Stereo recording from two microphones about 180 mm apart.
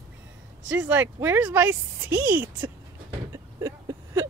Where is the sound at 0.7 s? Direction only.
10° right (ahead or behind).